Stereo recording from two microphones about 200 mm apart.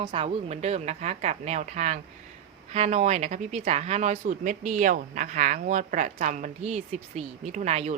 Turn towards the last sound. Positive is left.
turn(degrees=-35)  # may be behind; listen again after turning